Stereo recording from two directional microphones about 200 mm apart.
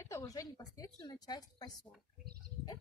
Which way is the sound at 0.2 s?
20° left (ahead or behind).